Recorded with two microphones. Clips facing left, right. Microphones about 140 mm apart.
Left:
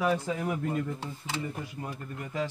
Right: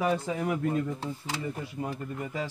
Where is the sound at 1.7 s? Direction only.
25° right (ahead or behind).